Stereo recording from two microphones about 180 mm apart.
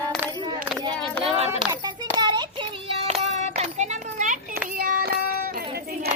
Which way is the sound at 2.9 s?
35° right (ahead or behind).